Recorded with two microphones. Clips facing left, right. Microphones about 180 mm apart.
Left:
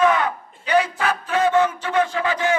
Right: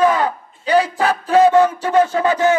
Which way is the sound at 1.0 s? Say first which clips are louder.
Right 7 dB; 35° right (ahead or behind).